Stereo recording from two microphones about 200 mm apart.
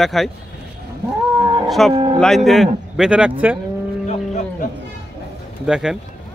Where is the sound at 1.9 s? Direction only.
30° right (ahead or behind).